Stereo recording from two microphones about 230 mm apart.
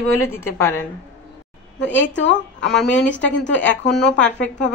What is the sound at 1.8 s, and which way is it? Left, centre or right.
A woman's voice, left.